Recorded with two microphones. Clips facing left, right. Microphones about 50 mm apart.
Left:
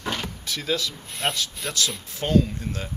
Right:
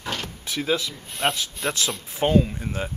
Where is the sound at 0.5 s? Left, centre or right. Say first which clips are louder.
Right 3 dB; right.